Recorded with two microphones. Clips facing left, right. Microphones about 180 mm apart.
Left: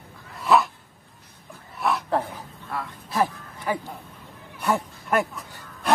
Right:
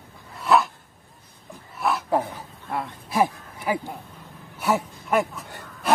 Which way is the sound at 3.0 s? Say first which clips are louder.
Right 2 dB; 10° right (ahead or behind).